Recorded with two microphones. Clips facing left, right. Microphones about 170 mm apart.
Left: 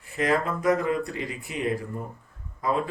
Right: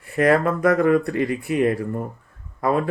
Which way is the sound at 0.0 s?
60° right (ahead or behind).